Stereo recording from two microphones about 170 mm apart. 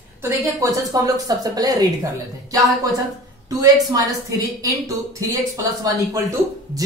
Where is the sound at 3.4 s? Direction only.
20° right (ahead or behind).